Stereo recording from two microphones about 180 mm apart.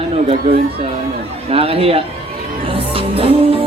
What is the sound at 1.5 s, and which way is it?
Speech, 35° right (ahead or behind).